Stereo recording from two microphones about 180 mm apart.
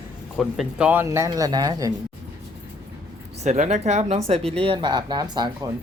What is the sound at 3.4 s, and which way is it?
Speech, 40° right (ahead or behind).